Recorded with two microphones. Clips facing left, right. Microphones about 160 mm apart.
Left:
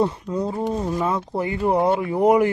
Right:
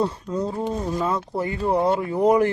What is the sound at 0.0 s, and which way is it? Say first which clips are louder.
Speech: left 2 dB; 15° left (ahead or behind).